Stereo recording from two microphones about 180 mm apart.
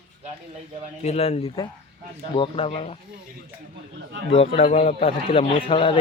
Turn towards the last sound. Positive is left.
turn(degrees=30)  # may be behind; listen again after turning